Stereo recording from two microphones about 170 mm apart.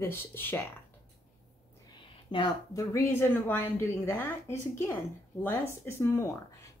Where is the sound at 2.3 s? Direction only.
25° left (ahead or behind).